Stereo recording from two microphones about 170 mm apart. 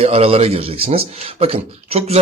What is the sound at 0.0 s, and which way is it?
Speech, 35° right (ahead or behind).